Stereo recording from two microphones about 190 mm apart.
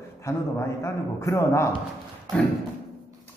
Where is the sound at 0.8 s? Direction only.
15° left (ahead or behind).